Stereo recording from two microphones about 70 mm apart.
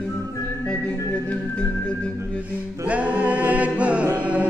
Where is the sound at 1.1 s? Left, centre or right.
Left.